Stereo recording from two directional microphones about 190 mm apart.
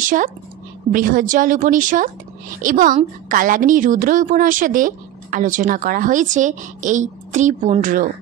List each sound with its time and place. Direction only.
0.0 s a woman's voice: 45° right (ahead or behind)